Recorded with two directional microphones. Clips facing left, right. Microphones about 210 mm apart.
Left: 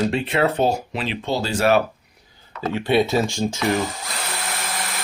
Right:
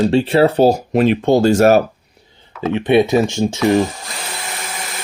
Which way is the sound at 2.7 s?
20° right (ahead or behind).